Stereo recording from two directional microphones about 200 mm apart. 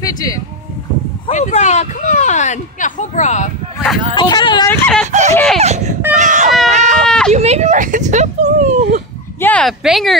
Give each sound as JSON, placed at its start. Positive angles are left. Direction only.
{"t": 0.0, "sound": "speech", "side_deg": 20}
{"t": 1.2, "sound": "speech", "side_deg": 35}
{"t": 4.1, "sound": "speech", "side_deg": 20}
{"t": 4.6, "sound": "speech", "side_deg": 5}
{"t": 5.0, "sound": "speech", "side_deg": -35}
{"t": 6.7, "sound": "a sound", "side_deg": -35}
{"t": 7.1, "sound": "a sound", "side_deg": 5}
{"t": 7.3, "sound": "speech", "side_deg": -35}
{"t": 9.4, "sound": "speech", "side_deg": 5}